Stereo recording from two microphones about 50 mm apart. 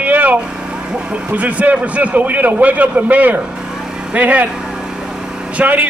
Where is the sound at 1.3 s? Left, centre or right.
Right.